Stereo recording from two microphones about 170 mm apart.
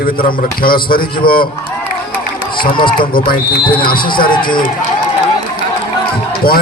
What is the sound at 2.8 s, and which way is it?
Speech, 30° left (ahead or behind).